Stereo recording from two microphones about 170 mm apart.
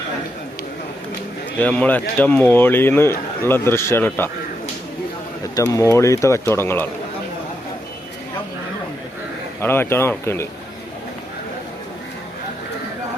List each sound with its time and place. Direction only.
1.5 s speech: 10° left (ahead or behind)
5.5 s speech: 20° left (ahead or behind)
9.6 s speech: 15° left (ahead or behind)